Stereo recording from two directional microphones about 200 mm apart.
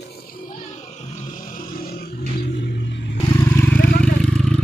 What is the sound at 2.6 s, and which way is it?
Vehicle, 60° left (ahead or behind).